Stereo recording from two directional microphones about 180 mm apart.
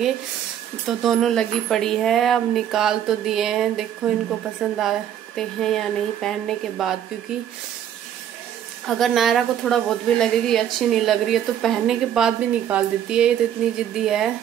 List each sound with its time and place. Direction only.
0.8 s a woman's voice: centre (ahead or behind)
8.8 s a woman's voice: centre (ahead or behind)